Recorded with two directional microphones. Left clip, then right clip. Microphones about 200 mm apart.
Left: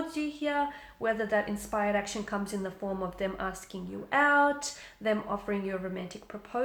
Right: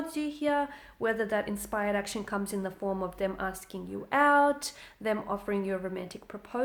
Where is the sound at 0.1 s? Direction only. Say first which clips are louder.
Right 2 dB; 45° right (ahead or behind).